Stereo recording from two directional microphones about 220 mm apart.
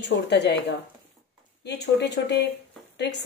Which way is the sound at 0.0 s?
50° left (ahead or behind).